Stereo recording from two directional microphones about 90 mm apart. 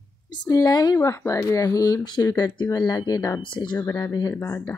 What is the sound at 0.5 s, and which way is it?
Speech, 45° left (ahead or behind).